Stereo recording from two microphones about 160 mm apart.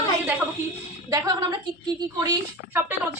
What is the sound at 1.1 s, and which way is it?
A woman's voice, 25° right (ahead or behind).